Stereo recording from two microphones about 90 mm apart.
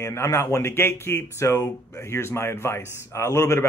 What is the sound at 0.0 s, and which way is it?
Speech, 35° left (ahead or behind).